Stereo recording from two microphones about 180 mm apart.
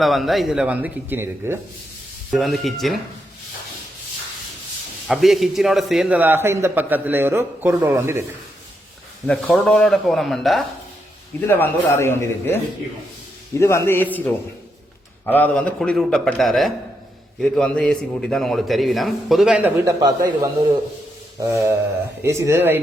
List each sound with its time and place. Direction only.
0.0 s a man's voice: centre (ahead or behind)
2.3 s a man's voice: centre (ahead or behind)
5.0 s a man's voice: centre (ahead or behind)
9.2 s a man's voice: 5° left (ahead or behind)
11.3 s a man's voice: 10° left (ahead or behind)
13.6 s a man's voice: 15° left (ahead or behind); by 20.1 s 15° right (ahead or behind)
21.4 s a man's voice: 15° right (ahead or behind)